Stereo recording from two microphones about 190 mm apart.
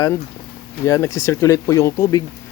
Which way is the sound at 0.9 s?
15° left (ahead or behind).